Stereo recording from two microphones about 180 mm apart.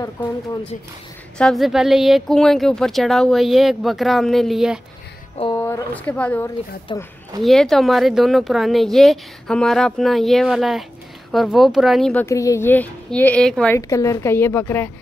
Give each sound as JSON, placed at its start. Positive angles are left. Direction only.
{"t": 1.4, "sound": "speech", "side_deg": 0}
{"t": 5.6, "sound": "speech", "side_deg": 10}
{"t": 6.9, "sound": "speech", "side_deg": 25}
{"t": 7.4, "sound": "speech", "side_deg": 0}
{"t": 13.7, "sound": "speech", "side_deg": 15}